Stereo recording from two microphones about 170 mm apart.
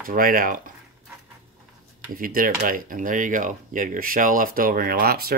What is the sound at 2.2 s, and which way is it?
Speech, 55° right (ahead or behind).